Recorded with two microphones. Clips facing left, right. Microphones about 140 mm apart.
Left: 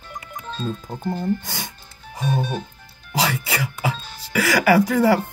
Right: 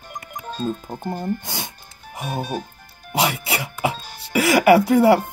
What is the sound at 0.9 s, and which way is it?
Speech, 50° right (ahead or behind).